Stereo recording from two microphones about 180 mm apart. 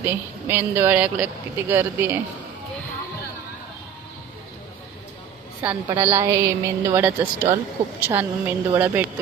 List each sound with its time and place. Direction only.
0.0 s speech: 10° right (ahead or behind)
5.6 s speech: 20° right (ahead or behind)